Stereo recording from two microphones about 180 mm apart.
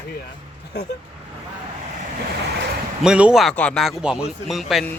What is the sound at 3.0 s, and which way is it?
A man's voice, 5° right (ahead or behind).